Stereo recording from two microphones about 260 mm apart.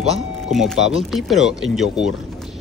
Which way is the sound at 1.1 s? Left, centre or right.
Centre.